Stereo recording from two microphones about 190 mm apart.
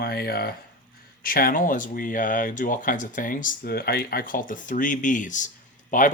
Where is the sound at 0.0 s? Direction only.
55° left (ahead or behind).